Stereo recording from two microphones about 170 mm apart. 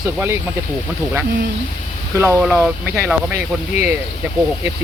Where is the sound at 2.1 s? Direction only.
15° right (ahead or behind).